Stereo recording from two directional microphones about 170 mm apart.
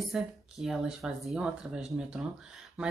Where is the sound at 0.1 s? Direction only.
Centre (ahead or behind).